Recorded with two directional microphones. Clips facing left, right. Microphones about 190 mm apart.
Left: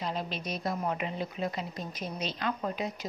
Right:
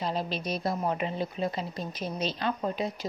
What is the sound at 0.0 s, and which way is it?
Speech, 35° right (ahead or behind).